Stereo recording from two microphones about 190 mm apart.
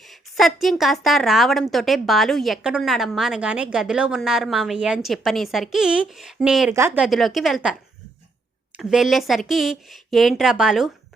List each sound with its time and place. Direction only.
0.0 s a woman's voice: centre (ahead or behind)